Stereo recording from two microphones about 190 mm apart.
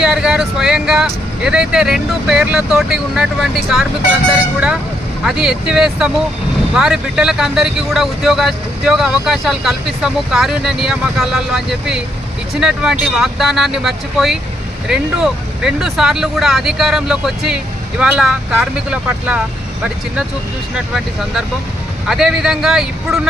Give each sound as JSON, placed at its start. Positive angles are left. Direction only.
{"t": 0.0, "sound": "speech", "side_deg": -5}
{"t": 20.7, "sound": "speech", "side_deg": -5}